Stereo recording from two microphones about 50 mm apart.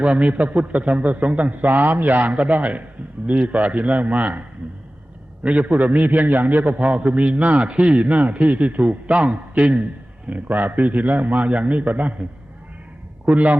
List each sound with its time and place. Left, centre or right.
0.0 s a man's voice: right
13.2 s a man's voice: right